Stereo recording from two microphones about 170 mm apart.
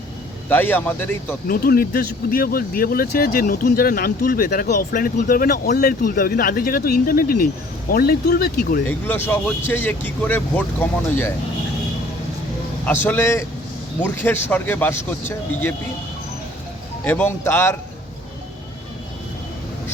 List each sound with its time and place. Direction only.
0.4 s speech: 10° left (ahead or behind)
1.5 s speech: 60° left (ahead or behind)
5.7 s speech: 65° left (ahead or behind)
8.9 s speech: 10° left (ahead or behind)
12.8 s speech: 10° left (ahead or behind)
17.0 s speech: 10° left (ahead or behind)